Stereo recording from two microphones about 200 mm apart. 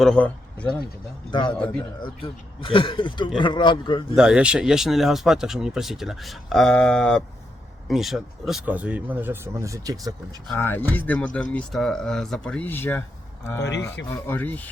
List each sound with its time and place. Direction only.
0.0 s speech: 5° left (ahead or behind)
1.3 s speech: 25° left (ahead or behind)
1.5 s speech: 5° left (ahead or behind)
2.0 s speech: 25° left (ahead or behind)
4.1 s speech: 5° right (ahead or behind)
10.5 s speech: 10° left (ahead or behind)
13.6 s speech: 60° left (ahead or behind)
14.1 s speech: 10° left (ahead or behind)